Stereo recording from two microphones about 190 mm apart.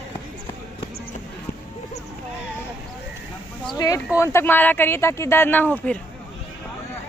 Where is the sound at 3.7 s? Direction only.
15° left (ahead or behind).